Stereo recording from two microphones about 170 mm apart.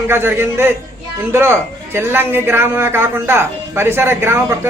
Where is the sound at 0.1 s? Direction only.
15° right (ahead or behind).